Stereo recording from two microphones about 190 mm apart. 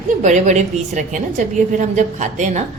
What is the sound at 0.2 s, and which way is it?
A woman's voice, 40° right (ahead or behind).